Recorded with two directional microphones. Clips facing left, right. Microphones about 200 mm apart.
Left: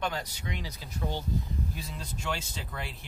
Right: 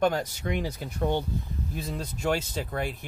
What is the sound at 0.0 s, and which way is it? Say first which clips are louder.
Speech: right 9 dB; 50° right (ahead or behind).